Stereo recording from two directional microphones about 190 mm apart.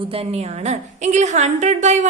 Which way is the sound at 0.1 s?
30° right (ahead or behind).